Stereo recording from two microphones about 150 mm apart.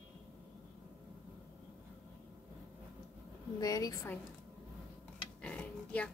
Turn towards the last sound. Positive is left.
turn(degrees=10)  # may be behind; listen again after turning